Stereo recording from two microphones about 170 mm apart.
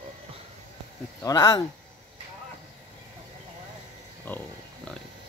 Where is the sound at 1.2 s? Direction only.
20° left (ahead or behind).